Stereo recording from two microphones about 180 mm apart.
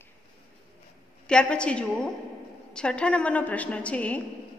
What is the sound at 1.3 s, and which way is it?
A woman's voice, 5° left (ahead or behind).